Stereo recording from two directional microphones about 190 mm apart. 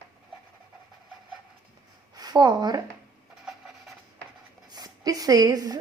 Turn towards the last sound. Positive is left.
turn(degrees=-20)  # may be behind; listen again after turning